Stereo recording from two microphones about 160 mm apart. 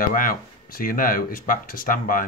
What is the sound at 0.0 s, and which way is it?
Speech, 60° left (ahead or behind).